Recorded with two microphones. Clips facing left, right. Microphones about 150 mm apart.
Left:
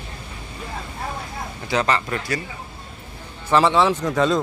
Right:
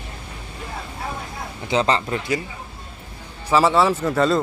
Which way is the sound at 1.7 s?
25° right (ahead or behind).